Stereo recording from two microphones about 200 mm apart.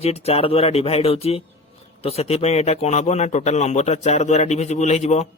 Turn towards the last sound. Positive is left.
turn(degrees=35)  # may be behind; listen again after turning